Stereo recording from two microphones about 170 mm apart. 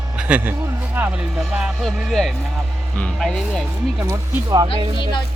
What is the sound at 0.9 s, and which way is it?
Speech, 10° right (ahead or behind).